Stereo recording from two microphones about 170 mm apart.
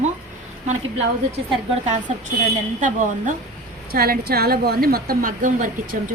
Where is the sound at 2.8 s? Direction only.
50° right (ahead or behind).